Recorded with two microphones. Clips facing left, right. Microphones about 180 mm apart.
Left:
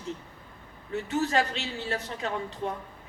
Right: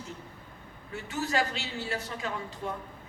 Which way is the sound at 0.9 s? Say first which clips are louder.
Left 4 dB; 35° left (ahead or behind).